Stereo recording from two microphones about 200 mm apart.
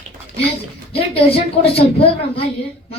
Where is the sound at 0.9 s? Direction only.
30° left (ahead or behind).